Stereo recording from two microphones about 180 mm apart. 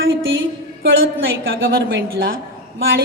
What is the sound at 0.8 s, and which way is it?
A woman's voice, 90° right.